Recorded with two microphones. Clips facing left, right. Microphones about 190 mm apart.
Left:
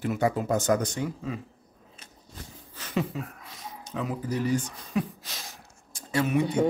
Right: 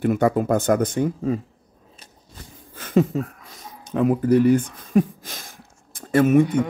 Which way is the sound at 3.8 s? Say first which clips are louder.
Right 12 dB; 55° right (ahead or behind).